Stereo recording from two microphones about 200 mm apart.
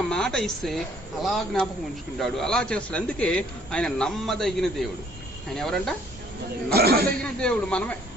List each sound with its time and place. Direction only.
0.1 s a man's voice: 5° left (ahead or behind)
6.7 s speech: 50° right (ahead or behind)
7.2 s a man's voice: 5° left (ahead or behind)